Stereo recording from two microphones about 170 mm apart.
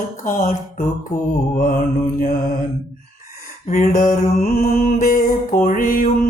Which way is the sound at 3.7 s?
50° left (ahead or behind).